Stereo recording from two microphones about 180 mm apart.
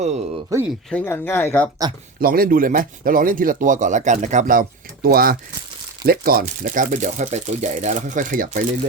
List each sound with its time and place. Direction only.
0.5 s speech: 20° right (ahead or behind)
0.9 s speech: 10° left (ahead or behind)
2.2 s speech: 55° right (ahead or behind)
5.0 s speech: 55° right (ahead or behind)